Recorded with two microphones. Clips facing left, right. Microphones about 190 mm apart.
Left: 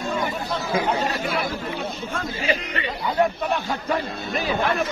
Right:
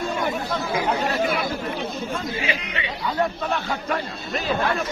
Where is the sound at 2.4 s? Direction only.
45° left (ahead or behind).